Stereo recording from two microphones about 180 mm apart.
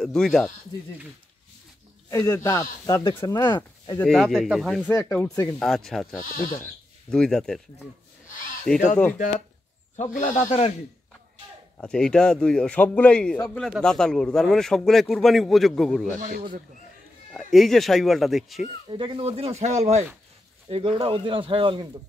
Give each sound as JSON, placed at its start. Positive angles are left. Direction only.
{"t": 0.0, "sound": "speech", "side_deg": 5}
{"t": 2.0, "sound": "speech", "side_deg": 20}
{"t": 4.0, "sound": "speech", "side_deg": 0}
{"t": 4.8, "sound": "speech", "side_deg": 10}
{"t": 5.6, "sound": "speech", "side_deg": 0}
{"t": 6.2, "sound": "a man's voice", "side_deg": 50}
{"t": 6.6, "sound": "speech", "side_deg": 5}
{"t": 8.7, "sound": "speech", "side_deg": 5}
{"t": 9.9, "sound": "a man's voice", "side_deg": 45}
{"t": 11.8, "sound": "speech", "side_deg": 5}
{"t": 16.2, "sound": "speech", "side_deg": -55}
{"t": 17.3, "sound": "speech", "side_deg": 0}
{"t": 18.9, "sound": "speech", "side_deg": -25}